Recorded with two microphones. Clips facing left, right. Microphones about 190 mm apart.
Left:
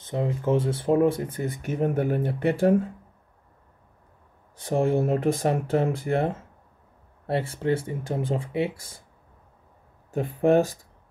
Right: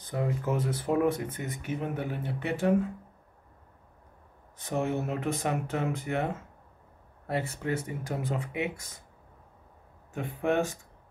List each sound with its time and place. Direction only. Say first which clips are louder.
0.0 s speech: left 4 dB; 25° left (ahead or behind); by 2.5 s 50° left (ahead or behind)
4.6 s speech: left 7 dB; 30° left (ahead or behind)
10.1 s speech: left 8 dB; 35° left (ahead or behind)